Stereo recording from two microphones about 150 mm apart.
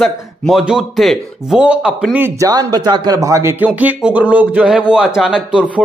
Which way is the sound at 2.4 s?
25° right (ahead or behind).